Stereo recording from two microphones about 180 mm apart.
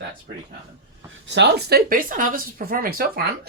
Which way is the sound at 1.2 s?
75° right (ahead or behind).